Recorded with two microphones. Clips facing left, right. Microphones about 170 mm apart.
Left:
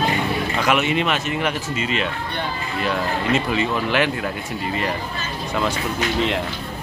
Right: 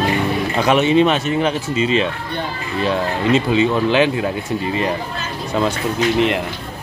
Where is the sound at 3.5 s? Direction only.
20° right (ahead or behind).